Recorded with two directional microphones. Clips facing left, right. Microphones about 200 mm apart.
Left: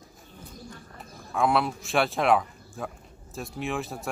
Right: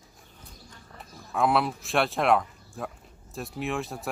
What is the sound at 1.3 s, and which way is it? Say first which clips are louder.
Speech: even; centre (ahead or behind).